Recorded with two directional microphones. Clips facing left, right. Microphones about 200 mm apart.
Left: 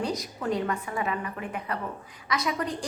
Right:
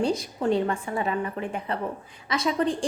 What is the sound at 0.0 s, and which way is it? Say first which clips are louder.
A woman's voice: right 5 dB; 30° right (ahead or behind).